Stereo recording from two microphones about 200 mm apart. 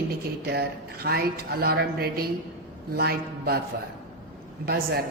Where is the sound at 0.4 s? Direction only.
55° right (ahead or behind).